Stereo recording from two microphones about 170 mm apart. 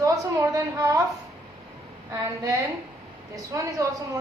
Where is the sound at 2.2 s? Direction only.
20° right (ahead or behind).